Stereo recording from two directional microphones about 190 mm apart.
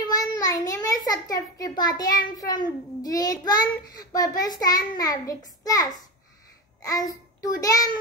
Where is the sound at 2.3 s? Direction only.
20° left (ahead or behind).